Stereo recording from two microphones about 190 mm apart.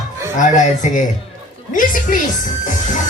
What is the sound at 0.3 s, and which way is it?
Speech, 40° left (ahead or behind).